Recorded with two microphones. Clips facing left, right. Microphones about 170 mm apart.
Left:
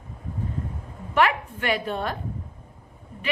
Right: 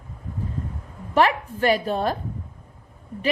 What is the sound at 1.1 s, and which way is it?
A woman's voice, 35° right (ahead or behind).